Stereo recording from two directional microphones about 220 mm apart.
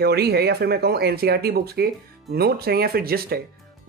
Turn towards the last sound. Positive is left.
turn(degrees=-45)  # may be behind; listen again after turning